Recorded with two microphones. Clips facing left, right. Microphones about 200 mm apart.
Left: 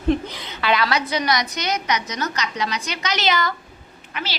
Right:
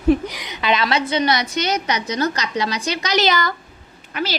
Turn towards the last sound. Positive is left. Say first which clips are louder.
# right 6 dB
turn(degrees=-40)  # may be behind; listen again after turning